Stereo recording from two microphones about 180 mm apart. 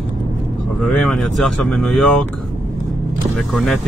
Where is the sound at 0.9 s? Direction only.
5° left (ahead or behind).